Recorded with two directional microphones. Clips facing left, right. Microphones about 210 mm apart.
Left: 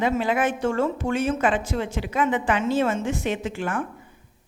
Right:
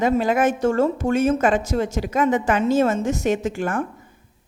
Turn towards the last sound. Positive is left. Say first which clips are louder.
# right 4 dB
turn(degrees=-45)  # may be behind; listen again after turning